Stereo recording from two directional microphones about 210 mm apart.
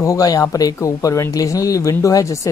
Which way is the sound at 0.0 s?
15° left (ahead or behind).